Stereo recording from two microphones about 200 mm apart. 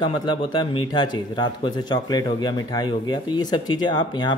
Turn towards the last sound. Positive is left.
turn(degrees=20)  # may be behind; listen again after turning